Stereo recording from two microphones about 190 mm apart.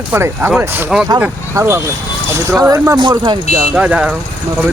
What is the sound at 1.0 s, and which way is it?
Speech, 15° right (ahead or behind).